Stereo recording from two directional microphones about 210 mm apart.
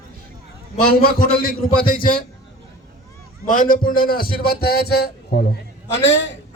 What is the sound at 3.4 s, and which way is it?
A man's voice, 40° left (ahead or behind).